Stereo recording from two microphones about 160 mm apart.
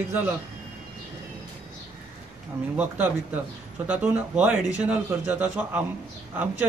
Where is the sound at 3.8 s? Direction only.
10° right (ahead or behind).